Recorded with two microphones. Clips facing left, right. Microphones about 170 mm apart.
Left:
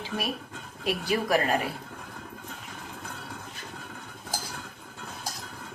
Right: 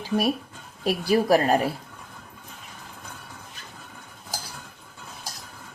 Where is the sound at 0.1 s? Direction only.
45° right (ahead or behind).